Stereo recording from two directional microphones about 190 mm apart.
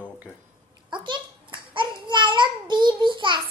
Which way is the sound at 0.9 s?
25° right (ahead or behind).